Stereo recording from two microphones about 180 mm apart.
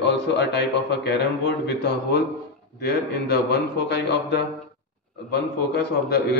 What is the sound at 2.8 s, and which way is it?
A man's voice, 60° left (ahead or behind).